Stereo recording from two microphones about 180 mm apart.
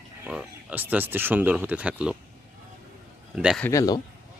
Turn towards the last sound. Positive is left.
turn(degrees=20)  # may be behind; listen again after turning